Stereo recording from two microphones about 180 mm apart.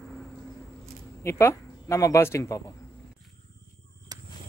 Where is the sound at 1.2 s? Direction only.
15° left (ahead or behind).